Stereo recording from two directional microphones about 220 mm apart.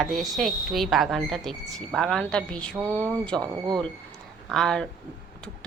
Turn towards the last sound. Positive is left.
turn(degrees=0)  # may be behind; listen again after turning